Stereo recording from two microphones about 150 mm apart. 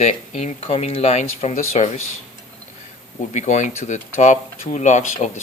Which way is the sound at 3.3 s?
50° left (ahead or behind).